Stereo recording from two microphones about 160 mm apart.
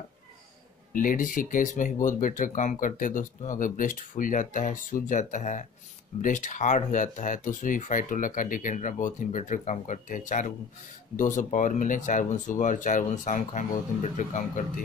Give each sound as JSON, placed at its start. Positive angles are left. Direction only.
{"t": 0.9, "sound": "speech", "side_deg": 55}